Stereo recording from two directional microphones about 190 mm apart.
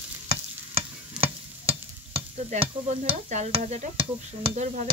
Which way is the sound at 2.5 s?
35° right (ahead or behind).